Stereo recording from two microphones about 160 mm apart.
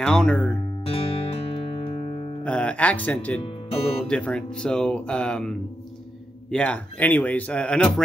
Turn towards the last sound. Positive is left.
turn(degrees=5)  # may be behind; listen again after turning